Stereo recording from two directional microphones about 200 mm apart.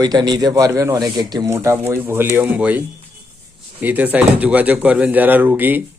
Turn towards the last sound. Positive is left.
turn(degrees=-10)  # may be behind; listen again after turning